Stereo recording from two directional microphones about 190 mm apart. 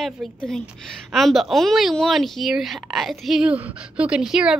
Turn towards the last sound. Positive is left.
turn(degrees=-5)  # may be behind; listen again after turning